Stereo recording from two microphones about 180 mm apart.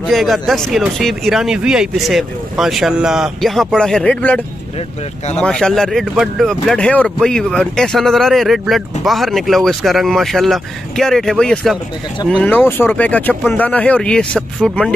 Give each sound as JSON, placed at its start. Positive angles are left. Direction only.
{"t": 0.0, "sound": "speech", "side_deg": 0}
{"t": 5.4, "sound": "speech", "side_deg": 5}